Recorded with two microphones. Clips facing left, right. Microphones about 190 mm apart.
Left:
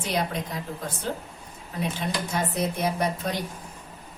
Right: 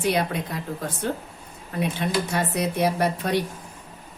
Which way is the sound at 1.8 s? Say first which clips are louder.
Right 4 dB; 65° right (ahead or behind).